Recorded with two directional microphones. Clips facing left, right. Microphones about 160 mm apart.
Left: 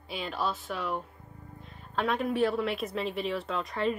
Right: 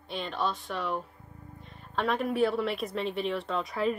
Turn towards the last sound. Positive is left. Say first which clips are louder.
# right 1 dB
turn(degrees=0)  # may be behind; listen again after turning